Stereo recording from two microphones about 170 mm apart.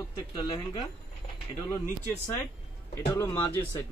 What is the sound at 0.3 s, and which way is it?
Speech, 25° left (ahead or behind).